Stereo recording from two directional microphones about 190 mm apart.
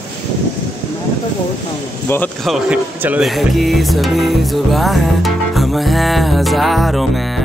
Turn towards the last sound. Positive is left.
turn(degrees=0)  # may be behind; listen again after turning